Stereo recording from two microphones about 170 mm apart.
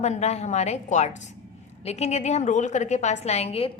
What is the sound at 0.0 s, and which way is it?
A woman's voice, 40° left (ahead or behind).